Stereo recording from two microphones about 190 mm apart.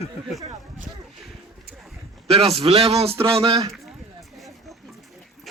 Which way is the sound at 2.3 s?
30° right (ahead or behind).